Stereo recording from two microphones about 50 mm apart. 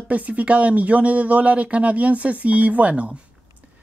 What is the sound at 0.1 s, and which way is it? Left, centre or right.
Speech, right.